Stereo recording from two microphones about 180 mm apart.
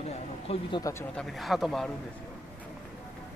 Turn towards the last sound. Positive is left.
turn(degrees=0)  # may be behind; listen again after turning